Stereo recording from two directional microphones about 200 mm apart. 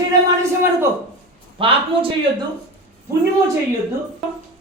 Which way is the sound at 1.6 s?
25° right (ahead or behind).